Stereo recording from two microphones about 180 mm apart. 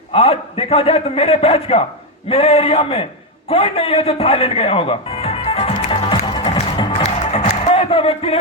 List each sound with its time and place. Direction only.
0.1 s a man's voice: 35° left (ahead or behind)
3.5 s music: 35° left (ahead or behind)
7.2 s music: 35° left (ahead or behind)